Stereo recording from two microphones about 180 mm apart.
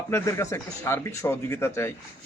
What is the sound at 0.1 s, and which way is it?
A man's voice, 15° left (ahead or behind).